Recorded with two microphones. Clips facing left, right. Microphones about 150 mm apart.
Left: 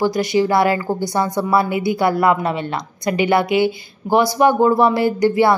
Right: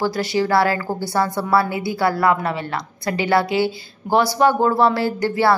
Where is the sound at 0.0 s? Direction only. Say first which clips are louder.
Left 4 dB; 15° left (ahead or behind).